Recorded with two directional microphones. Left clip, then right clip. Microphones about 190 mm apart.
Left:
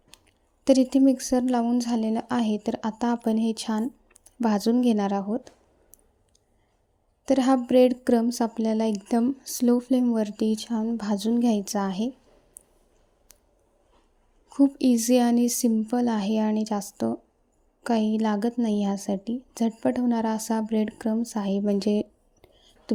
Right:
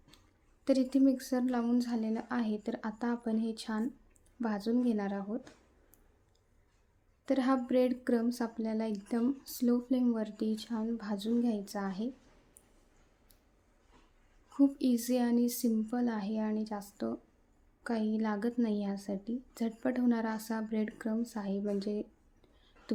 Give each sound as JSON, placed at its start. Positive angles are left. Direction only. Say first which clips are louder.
{"t": 0.1, "sound": "a sound", "louder": "left 10 dB", "side_deg": 35}
{"t": 0.6, "sound": "speech", "louder": "left 9 dB", "side_deg": 35}
{"t": 7.3, "sound": "speech", "louder": "left 9 dB", "side_deg": 35}
{"t": 14.5, "sound": "speech", "louder": "left 8 dB", "side_deg": 35}